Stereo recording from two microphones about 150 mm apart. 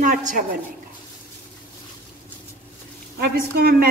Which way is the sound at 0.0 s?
60° right (ahead or behind).